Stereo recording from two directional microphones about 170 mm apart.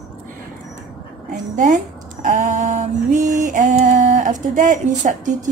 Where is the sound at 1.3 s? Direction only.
50° right (ahead or behind).